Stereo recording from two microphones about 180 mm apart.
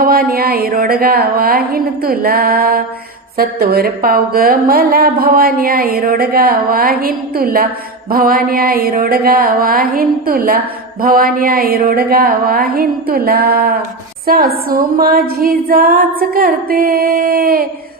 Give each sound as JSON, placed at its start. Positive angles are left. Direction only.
{"t": 0.0, "sound": "a woman's voice", "side_deg": -55}
{"t": 8.1, "sound": "a sound", "side_deg": -55}
{"t": 11.0, "sound": "a woman's voice", "side_deg": -50}